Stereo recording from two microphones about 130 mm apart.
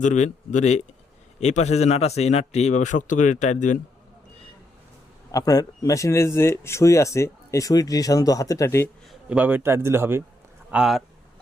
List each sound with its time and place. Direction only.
0.0 s a man's voice: 65° left (ahead or behind)
5.3 s speech: 30° left (ahead or behind)
9.0 s a man's voice: 10° right (ahead or behind)
10.7 s speech: 5° right (ahead or behind)